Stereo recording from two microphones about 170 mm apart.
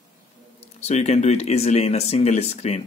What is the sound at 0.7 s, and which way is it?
Speech, 40° left (ahead or behind).